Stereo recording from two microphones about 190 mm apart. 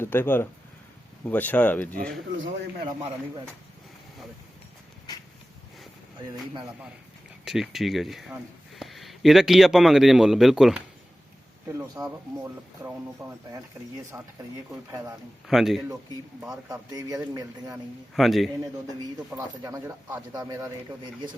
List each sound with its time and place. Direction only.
0.0 s speech: 10° left (ahead or behind)
7.4 s speech: centre (ahead or behind)
12.0 s speech: 20° right (ahead or behind)
15.4 s a man's voice: centre (ahead or behind)
16.9 s speech: 20° right (ahead or behind)
18.1 s a man's voice: centre (ahead or behind)
19.3 s speech: 20° right (ahead or behind)